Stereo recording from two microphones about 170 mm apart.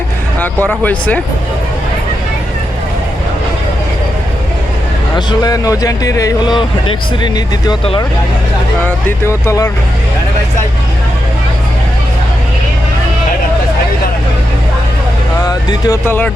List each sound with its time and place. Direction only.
0.3 s speech: 10° left (ahead or behind)
5.1 s speech: 20° left (ahead or behind)
9.0 s speech: 15° left (ahead or behind)
15.4 s music: 15° left (ahead or behind)